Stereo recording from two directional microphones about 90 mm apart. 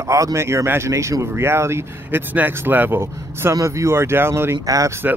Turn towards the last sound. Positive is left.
turn(degrees=-40)  # may be behind; listen again after turning